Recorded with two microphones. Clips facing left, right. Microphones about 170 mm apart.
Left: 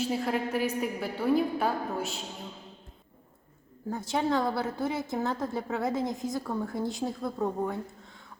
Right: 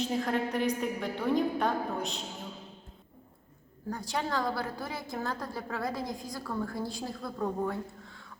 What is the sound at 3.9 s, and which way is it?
A woman's voice, 25° left (ahead or behind).